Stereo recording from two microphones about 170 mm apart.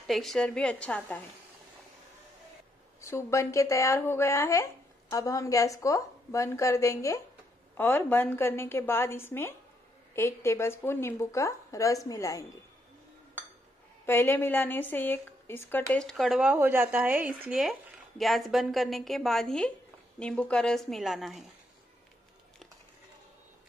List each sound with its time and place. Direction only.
0.0 s a woman's voice: centre (ahead or behind)
3.0 s speech: 15° left (ahead or behind)
14.0 s a woman's voice: 15° left (ahead or behind)